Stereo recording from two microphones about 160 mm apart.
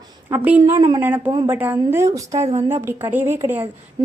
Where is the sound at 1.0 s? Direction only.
10° right (ahead or behind).